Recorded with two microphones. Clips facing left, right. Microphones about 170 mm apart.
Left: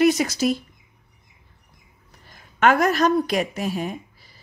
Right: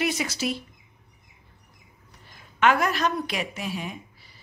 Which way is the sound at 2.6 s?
45° left (ahead or behind).